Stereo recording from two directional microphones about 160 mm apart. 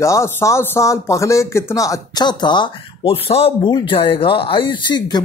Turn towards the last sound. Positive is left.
turn(degrees=30)  # may be behind; listen again after turning